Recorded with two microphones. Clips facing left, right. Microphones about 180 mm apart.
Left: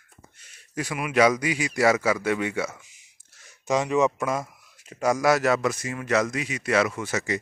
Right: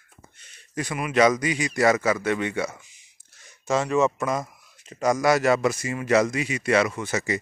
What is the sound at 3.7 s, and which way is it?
Speech, 15° left (ahead or behind).